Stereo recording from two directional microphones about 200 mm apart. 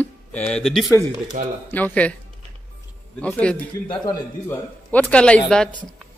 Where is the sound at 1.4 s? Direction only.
40° right (ahead or behind).